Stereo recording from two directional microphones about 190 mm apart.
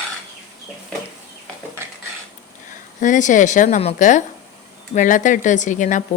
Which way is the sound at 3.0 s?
40° left (ahead or behind).